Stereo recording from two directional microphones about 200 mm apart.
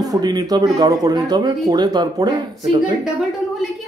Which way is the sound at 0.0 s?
20° right (ahead or behind).